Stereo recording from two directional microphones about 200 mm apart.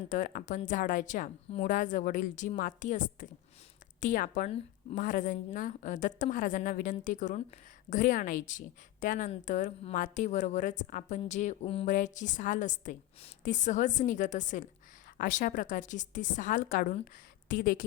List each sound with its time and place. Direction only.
0.1 s a woman's voice: 40° left (ahead or behind)